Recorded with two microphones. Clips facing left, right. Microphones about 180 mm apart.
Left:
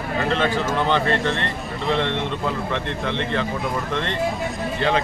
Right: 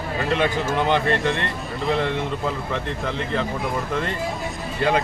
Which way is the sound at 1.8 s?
5° right (ahead or behind).